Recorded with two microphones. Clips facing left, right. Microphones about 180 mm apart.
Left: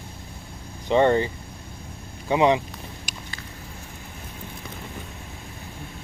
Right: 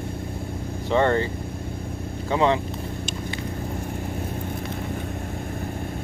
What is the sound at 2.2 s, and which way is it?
Speech, 15° left (ahead or behind).